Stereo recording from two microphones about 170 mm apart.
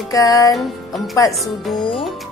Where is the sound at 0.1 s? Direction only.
20° left (ahead or behind).